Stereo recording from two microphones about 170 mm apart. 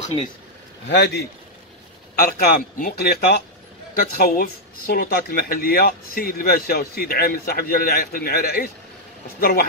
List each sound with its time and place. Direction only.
0.8 s a man's voice: 75° left (ahead or behind)
2.1 s speech: 60° left (ahead or behind)